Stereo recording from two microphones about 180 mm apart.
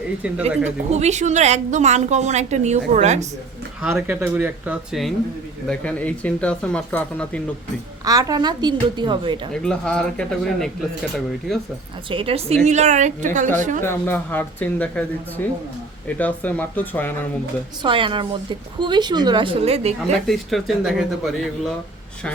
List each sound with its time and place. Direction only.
0.9 s a woman's voice: 40° right (ahead or behind)
3.8 s speech: 5° right (ahead or behind)
8.0 s a woman's voice: 20° right (ahead or behind)
9.5 s speech: 5° left (ahead or behind)
12.0 s a woman's voice: 30° right (ahead or behind)
13.8 s speech: 10° left (ahead or behind)
17.8 s a woman's voice: 30° right (ahead or behind)
20.2 s speech: centre (ahead or behind)